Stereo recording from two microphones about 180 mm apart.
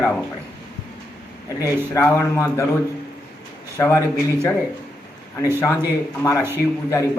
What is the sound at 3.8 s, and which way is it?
Speech, 15° left (ahead or behind).